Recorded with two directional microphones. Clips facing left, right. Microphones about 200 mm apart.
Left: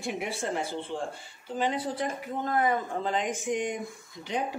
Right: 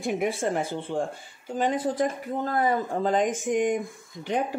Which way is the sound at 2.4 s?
35° right (ahead or behind).